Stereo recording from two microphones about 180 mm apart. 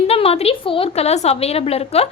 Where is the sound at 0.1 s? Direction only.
35° left (ahead or behind).